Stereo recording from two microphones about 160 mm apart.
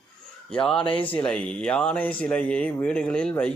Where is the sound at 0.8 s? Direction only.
30° left (ahead or behind).